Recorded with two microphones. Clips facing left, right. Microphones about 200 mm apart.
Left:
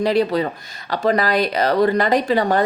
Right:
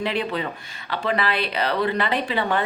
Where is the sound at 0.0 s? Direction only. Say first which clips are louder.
Left 8 dB; 40° left (ahead or behind).